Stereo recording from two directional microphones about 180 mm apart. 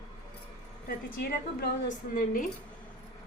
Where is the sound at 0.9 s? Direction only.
55° left (ahead or behind).